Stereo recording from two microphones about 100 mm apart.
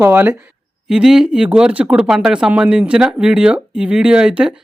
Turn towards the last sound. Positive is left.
turn(degrees=-10)  # may be behind; listen again after turning